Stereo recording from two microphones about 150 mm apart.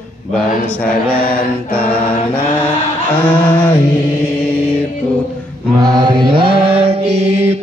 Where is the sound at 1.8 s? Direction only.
10° left (ahead or behind).